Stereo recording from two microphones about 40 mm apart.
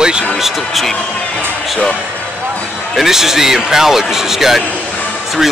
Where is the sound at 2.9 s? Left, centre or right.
Centre.